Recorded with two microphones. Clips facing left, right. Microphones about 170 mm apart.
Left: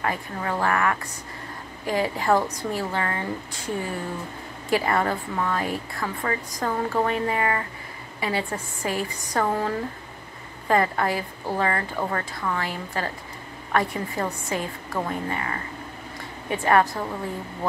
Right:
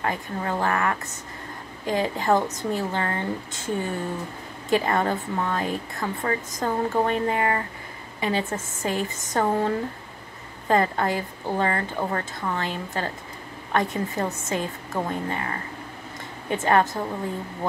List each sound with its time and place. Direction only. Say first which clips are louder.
0.0 s speech: even; 25° right (ahead or behind)
16.5 s speech: even; 20° right (ahead or behind)